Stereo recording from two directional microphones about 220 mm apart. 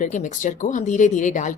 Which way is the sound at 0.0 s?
35° left (ahead or behind).